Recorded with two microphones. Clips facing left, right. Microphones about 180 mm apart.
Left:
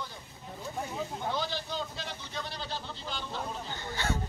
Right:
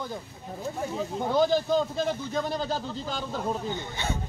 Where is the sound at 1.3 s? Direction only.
45° right (ahead or behind).